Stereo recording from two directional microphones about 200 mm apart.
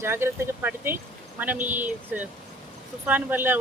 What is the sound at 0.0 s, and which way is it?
Speech, 10° right (ahead or behind).